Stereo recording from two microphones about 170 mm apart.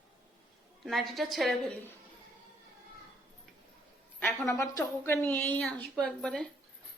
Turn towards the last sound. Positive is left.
turn(degrees=5)  # may be behind; listen again after turning